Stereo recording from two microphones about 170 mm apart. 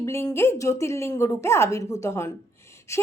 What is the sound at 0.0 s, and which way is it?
A woman's voice, 20° left (ahead or behind).